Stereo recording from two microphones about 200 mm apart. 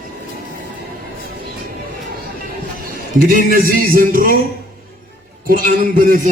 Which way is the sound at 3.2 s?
45° right (ahead or behind).